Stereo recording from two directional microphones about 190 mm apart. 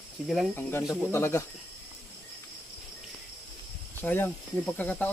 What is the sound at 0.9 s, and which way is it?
Speech, 10° left (ahead or behind).